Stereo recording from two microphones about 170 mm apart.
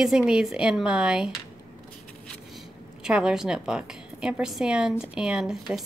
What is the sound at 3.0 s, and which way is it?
A woman's voice, 5° right (ahead or behind).